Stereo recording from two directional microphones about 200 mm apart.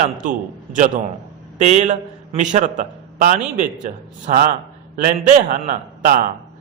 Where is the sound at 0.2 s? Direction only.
40° right (ahead or behind).